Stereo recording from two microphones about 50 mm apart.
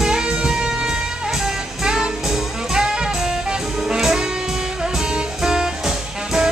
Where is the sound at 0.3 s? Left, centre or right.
Centre.